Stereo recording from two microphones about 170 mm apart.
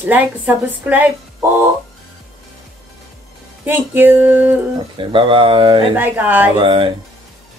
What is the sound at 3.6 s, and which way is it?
Speech, 10° right (ahead or behind).